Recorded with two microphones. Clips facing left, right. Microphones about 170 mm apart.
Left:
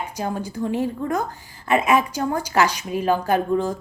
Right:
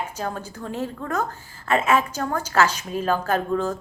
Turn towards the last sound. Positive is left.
turn(degrees=15)  # may be behind; listen again after turning